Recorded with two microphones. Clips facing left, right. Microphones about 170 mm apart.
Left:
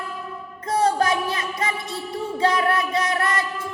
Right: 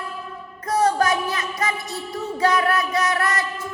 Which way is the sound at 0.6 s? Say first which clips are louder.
Right 1 dB; 25° left (ahead or behind).